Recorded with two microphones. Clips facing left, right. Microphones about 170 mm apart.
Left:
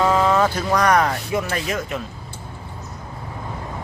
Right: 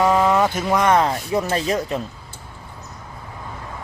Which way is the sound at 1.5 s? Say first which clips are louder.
Right 4 dB; 35° right (ahead or behind).